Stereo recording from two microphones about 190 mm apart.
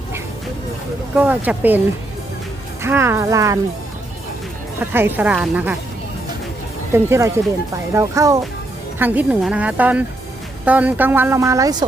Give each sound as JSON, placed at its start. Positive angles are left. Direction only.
{"t": 1.1, "sound": "speech", "side_deg": -10}
{"t": 2.8, "sound": "speech", "side_deg": -15}
{"t": 4.8, "sound": "speech", "side_deg": -10}
{"t": 6.9, "sound": "speech", "side_deg": -15}